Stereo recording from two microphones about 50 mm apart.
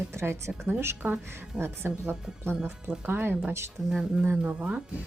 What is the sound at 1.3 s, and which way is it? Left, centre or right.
Speech, right.